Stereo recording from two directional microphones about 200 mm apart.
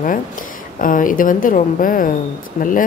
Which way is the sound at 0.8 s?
40° left (ahead or behind).